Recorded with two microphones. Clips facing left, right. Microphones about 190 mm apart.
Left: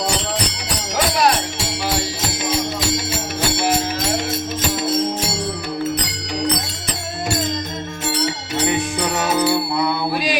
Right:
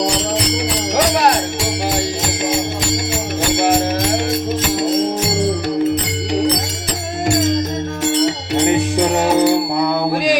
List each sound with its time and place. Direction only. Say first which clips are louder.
9.2 s music: right 4 dB; 30° right (ahead or behind)
9.7 s music: right 4 dB; 50° right (ahead or behind)